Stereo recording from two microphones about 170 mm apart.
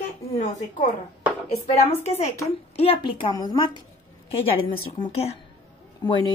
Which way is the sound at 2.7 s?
35° left (ahead or behind).